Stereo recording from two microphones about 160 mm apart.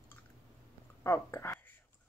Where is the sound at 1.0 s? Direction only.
15° left (ahead or behind).